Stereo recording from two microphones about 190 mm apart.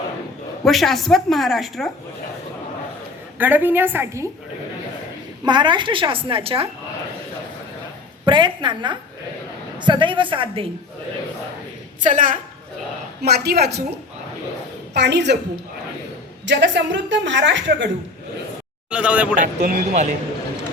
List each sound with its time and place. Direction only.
0.6 s a woman's voice: centre (ahead or behind)
3.3 s a woman's voice: 10° right (ahead or behind)
5.5 s a woman's voice: 25° right (ahead or behind)
8.2 s a woman's voice: 25° right (ahead or behind)
12.0 s a woman's voice: 45° right (ahead or behind)
13.2 s a woman's voice: 55° right (ahead or behind)
14.9 s a woman's voice: 65° right (ahead or behind)
16.5 s a woman's voice: 70° right (ahead or behind)
18.9 s a woman's voice: 5° right (ahead or behind)
19.4 s speech: 45° right (ahead or behind)